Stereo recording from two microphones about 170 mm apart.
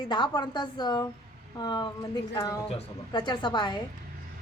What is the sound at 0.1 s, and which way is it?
A woman's voice, 25° left (ahead or behind).